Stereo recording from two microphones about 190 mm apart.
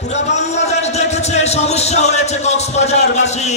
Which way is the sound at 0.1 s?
35° left (ahead or behind).